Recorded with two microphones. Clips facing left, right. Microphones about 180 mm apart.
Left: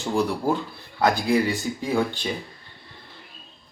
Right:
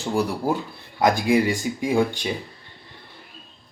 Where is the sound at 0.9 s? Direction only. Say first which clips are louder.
Right 2 dB; 15° right (ahead or behind).